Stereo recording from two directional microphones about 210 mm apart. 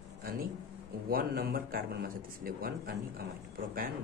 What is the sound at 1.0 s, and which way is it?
Speech, 45° right (ahead or behind).